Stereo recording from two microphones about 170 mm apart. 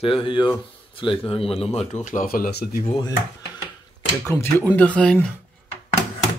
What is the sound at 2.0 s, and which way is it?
Speech, 55° left (ahead or behind).